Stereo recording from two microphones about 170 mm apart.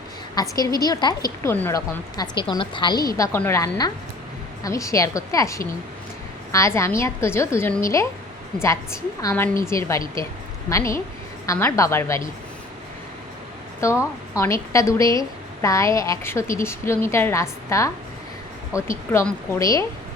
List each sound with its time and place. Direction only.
0.5 s a woman's voice: 20° left (ahead or behind)
3.2 s a woman's voice: 15° left (ahead or behind)
13.8 s a woman's voice: 15° left (ahead or behind)